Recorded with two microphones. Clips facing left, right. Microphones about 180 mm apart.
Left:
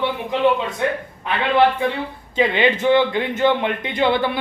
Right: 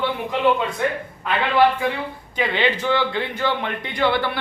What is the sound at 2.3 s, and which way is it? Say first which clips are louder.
Speech: left 4 dB; 20° left (ahead or behind).